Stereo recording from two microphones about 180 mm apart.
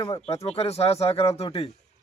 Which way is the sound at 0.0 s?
30° left (ahead or behind).